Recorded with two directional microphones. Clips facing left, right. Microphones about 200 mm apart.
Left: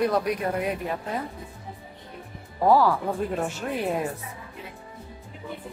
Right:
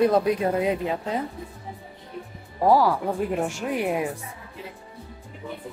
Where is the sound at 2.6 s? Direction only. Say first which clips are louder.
Right 1 dB; 10° right (ahead or behind).